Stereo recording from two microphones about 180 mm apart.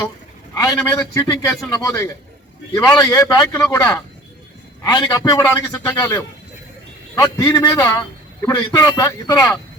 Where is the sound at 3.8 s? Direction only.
20° left (ahead or behind).